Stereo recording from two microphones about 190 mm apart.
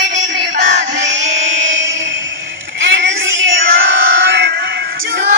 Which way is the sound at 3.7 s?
65° right (ahead or behind).